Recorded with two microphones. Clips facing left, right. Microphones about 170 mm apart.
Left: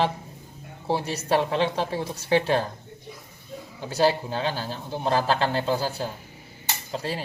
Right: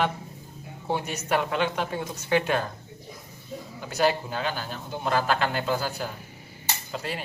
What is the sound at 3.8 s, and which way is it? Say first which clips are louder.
A man's voice: left 2 dB; 30° left (ahead or behind).